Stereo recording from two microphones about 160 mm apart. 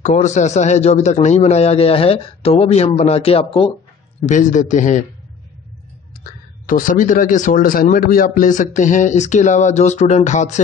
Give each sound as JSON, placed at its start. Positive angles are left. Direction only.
{"t": 0.0, "sound": "a man's voice", "side_deg": 50}
{"t": 4.2, "sound": "a man's voice", "side_deg": 50}
{"t": 6.6, "sound": "a man's voice", "side_deg": 55}